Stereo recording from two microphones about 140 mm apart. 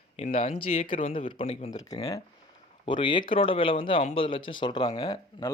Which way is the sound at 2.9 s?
35° left (ahead or behind).